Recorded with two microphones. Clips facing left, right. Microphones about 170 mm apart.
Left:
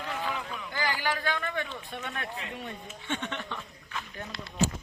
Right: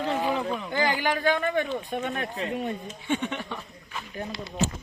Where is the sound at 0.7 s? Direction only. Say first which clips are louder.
Right 4 dB; 20° right (ahead or behind).